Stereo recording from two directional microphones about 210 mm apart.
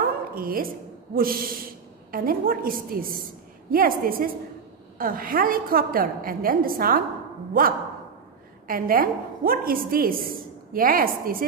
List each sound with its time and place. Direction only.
0.3 s a woman's voice: 45° right (ahead or behind)